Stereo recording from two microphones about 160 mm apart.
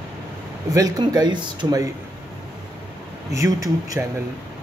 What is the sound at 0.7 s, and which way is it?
Speech, 20° right (ahead or behind).